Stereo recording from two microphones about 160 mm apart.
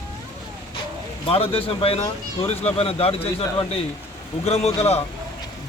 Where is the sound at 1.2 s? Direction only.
35° left (ahead or behind).